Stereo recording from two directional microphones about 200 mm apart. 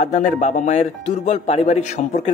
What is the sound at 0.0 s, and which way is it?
Speech, 35° left (ahead or behind).